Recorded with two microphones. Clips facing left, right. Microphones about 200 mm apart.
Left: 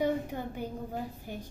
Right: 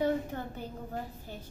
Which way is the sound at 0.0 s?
15° left (ahead or behind).